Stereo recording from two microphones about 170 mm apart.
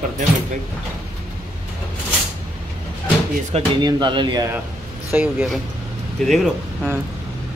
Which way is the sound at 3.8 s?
25° right (ahead or behind).